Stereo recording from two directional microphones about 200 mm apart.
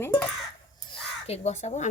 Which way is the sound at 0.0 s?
10° left (ahead or behind).